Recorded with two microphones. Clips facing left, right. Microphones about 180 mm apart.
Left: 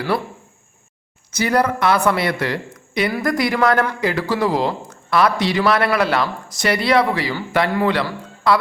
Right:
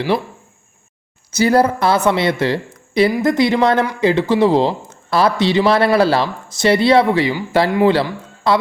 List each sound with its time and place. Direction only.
0.1 s speech: 20° right (ahead or behind)
1.3 s speech: 30° right (ahead or behind)